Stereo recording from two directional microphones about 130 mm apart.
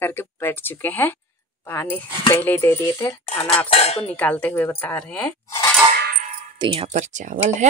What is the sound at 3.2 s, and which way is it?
Cutlery, 55° left (ahead or behind).